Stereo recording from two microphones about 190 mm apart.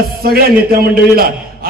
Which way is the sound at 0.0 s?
55° right (ahead or behind).